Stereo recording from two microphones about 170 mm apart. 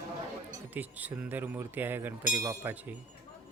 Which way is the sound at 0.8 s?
10° right (ahead or behind).